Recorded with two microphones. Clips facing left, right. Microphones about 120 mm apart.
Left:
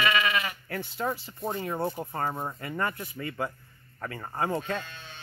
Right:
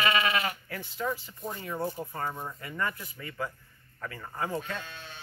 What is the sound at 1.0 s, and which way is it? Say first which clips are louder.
Speech: left 2 dB; 30° left (ahead or behind).